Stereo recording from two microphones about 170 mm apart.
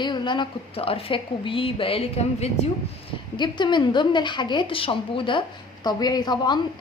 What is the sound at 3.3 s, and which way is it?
A woman's voice, 25° left (ahead or behind).